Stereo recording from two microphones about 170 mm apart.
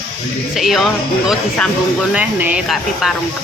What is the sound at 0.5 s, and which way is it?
Speech, centre (ahead or behind).